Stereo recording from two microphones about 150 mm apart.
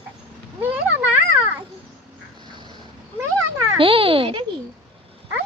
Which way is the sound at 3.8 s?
40° right (ahead or behind).